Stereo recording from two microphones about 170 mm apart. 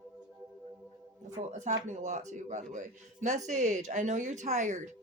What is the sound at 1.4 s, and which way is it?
Speech, 45° right (ahead or behind).